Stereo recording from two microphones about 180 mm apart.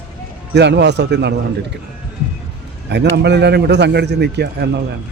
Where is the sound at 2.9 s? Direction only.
70° right (ahead or behind).